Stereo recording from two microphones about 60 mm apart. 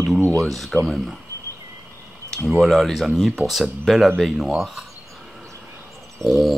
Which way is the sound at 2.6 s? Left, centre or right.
Centre.